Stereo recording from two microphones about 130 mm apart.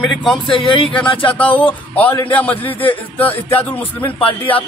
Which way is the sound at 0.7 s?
40° left (ahead or behind).